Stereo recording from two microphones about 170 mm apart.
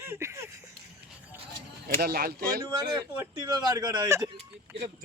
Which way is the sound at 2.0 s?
65° right (ahead or behind).